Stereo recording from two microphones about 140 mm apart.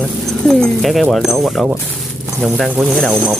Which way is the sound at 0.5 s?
Centre (ahead or behind).